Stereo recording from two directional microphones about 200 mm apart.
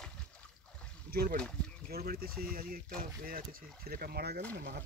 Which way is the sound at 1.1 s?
50° right (ahead or behind).